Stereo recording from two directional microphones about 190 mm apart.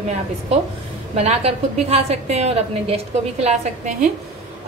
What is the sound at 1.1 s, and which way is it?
A woman's voice, 35° right (ahead or behind).